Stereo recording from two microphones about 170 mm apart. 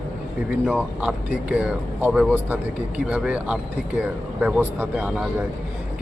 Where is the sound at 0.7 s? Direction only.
5° right (ahead or behind).